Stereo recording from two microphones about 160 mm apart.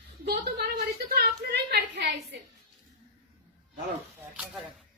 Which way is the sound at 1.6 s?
80° right.